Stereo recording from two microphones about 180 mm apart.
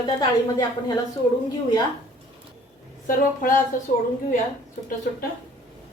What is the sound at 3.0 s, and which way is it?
Speech, 50° left (ahead or behind).